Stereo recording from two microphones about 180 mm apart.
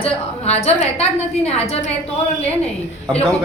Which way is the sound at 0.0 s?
35° left (ahead or behind).